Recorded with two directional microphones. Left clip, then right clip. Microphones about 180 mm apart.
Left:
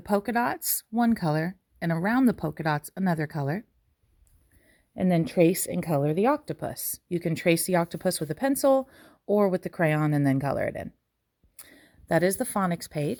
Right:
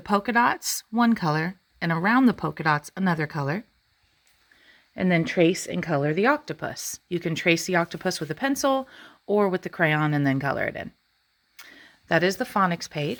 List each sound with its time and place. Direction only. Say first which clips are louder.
0.0 s speech: right 4 dB; 30° left (ahead or behind)
4.9 s speech: right 1 dB; 30° left (ahead or behind)